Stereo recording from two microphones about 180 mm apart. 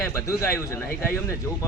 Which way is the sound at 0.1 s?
15° left (ahead or behind).